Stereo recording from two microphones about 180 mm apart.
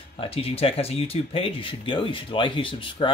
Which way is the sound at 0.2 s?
35° left (ahead or behind).